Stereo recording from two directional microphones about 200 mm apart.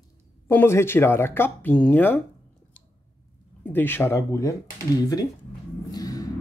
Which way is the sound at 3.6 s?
10° left (ahead or behind).